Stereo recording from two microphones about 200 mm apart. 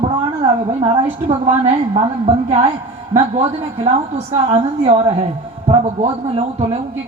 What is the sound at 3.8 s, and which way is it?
A woman's voice, 30° right (ahead or behind).